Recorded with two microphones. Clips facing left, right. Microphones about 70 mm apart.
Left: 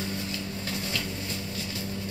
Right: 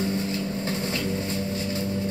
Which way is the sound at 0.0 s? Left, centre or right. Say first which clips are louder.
Right 7 dB; right.